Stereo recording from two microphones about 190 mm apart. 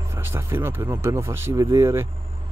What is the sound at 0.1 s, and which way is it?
Speech, 15° right (ahead or behind).